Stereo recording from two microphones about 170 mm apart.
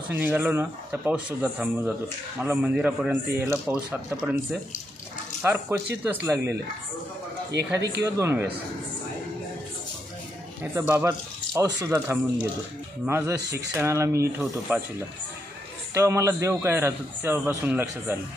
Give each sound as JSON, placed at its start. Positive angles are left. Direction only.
{"t": 0.2, "sound": "a man's voice", "side_deg": -10}
{"t": 7.5, "sound": "speech", "side_deg": -90}
{"t": 8.0, "sound": "a man's voice", "side_deg": -15}
{"t": 10.6, "sound": "a man's voice", "side_deg": -15}